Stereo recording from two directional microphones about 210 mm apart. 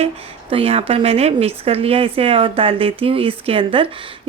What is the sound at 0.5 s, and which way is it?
Speech, 30° right (ahead or behind).